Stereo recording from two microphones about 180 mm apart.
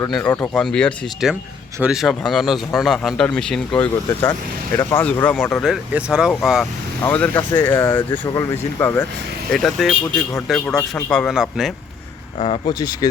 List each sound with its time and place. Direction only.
0.1 s a man's voice: 5° left (ahead or behind)
7.0 s speech: 10° left (ahead or behind)
9.5 s a man's voice: centre (ahead or behind)
12.4 s speech: 25° left (ahead or behind)